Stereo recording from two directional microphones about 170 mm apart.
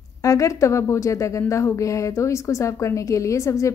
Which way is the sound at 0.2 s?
20° left (ahead or behind).